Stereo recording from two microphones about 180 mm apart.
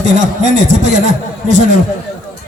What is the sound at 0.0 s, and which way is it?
A man's voice, 40° right (ahead or behind).